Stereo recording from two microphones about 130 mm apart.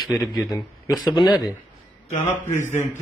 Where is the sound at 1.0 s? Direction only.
35° left (ahead or behind).